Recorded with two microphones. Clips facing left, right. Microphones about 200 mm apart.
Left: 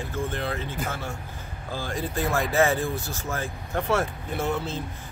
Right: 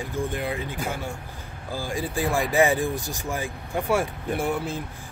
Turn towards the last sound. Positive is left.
turn(degrees=-10)  # may be behind; listen again after turning